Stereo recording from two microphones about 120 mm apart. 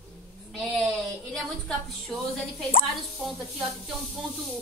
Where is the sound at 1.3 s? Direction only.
5° left (ahead or behind).